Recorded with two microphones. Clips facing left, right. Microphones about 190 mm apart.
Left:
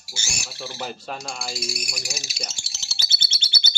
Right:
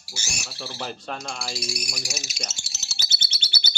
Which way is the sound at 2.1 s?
30° left (ahead or behind).